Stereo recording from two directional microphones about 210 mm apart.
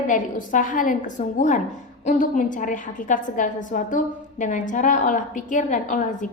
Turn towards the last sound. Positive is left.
turn(degrees=40)  # may be behind; listen again after turning